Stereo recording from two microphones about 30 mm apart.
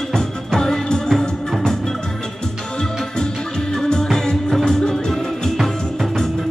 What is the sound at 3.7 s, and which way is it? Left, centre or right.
Music, left.